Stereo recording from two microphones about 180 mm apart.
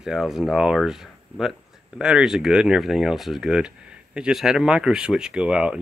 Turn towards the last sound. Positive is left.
turn(degrees=-5)  # may be behind; listen again after turning